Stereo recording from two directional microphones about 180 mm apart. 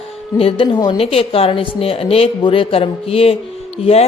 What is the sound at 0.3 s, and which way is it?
Speech, 30° left (ahead or behind).